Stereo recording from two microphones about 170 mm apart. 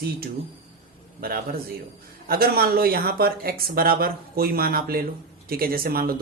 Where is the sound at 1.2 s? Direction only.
60° right (ahead or behind).